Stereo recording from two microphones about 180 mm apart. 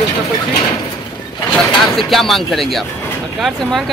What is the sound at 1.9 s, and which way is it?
Speech, centre (ahead or behind).